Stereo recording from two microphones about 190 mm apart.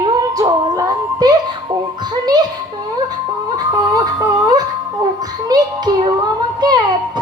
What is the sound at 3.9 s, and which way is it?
A child's voice, 20° right (ahead or behind).